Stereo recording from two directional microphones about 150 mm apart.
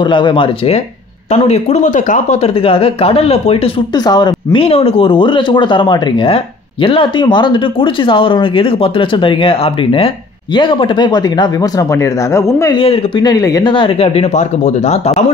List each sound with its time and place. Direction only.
0.0 s speech: 30° left (ahead or behind)
1.3 s speech: 50° left (ahead or behind)
3.9 s speech: 25° left (ahead or behind)
12.7 s speech: 35° left (ahead or behind)
13.2 s speech: 25° left (ahead or behind); by 15.3 s 45° left (ahead or behind)